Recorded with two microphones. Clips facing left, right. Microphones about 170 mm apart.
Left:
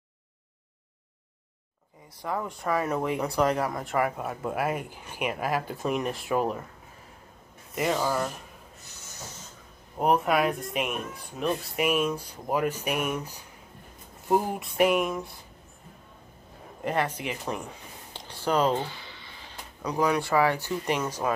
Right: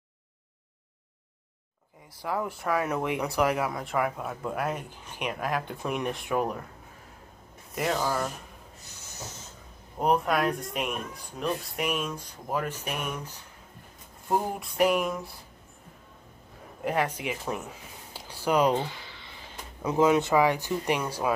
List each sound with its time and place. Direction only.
2.2 s speech: 5° right (ahead or behind)
7.7 s speech: centre (ahead or behind)
9.9 s speech: 5° left (ahead or behind)
16.8 s speech: 10° right (ahead or behind)
19.8 s speech: 20° right (ahead or behind)